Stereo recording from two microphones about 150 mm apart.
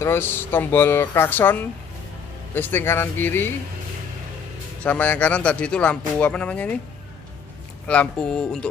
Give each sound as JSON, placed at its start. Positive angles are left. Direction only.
{"t": 0.0, "sound": "speech", "side_deg": 15}
{"t": 4.8, "sound": "speech", "side_deg": 10}
{"t": 7.8, "sound": "speech", "side_deg": 10}